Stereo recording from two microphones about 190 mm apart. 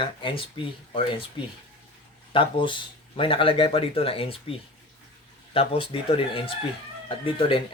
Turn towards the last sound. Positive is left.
turn(degrees=30)  # may be behind; listen again after turning